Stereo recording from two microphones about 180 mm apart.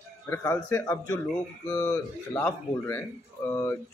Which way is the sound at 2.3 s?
15° left (ahead or behind).